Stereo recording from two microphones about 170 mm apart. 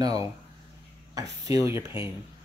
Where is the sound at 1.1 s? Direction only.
20° right (ahead or behind).